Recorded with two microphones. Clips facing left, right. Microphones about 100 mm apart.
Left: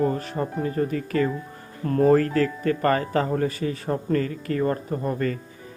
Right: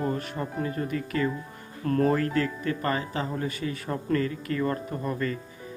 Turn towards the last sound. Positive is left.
turn(degrees=40)  # may be behind; listen again after turning